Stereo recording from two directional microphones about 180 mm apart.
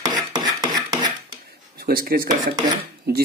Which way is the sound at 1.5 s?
55° right (ahead or behind).